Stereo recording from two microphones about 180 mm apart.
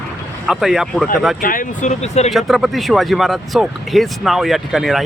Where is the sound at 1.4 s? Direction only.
50° left (ahead or behind).